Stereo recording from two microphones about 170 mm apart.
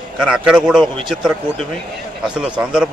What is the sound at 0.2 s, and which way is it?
A man's voice, 5° right (ahead or behind).